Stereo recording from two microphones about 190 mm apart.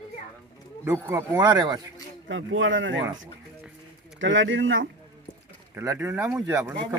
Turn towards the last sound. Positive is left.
turn(degrees=-15)  # may be behind; listen again after turning